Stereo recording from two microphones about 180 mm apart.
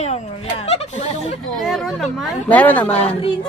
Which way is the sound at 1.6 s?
Centre (ahead or behind).